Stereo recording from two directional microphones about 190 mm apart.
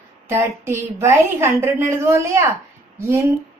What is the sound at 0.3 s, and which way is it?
A woman's voice, 15° right (ahead or behind).